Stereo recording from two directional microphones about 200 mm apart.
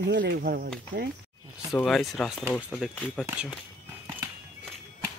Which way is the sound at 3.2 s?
5° right (ahead or behind).